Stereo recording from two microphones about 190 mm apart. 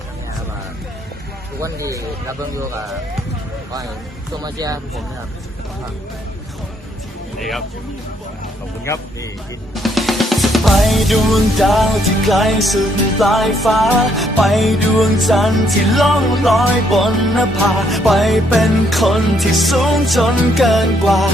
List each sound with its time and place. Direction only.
1.6 s speech: 15° right (ahead or behind)
4.4 s speech: 20° right (ahead or behind)
7.3 s speech: centre (ahead or behind)
9.7 s music: centre (ahead or behind)